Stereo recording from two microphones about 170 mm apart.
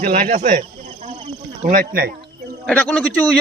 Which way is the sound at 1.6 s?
55° right (ahead or behind).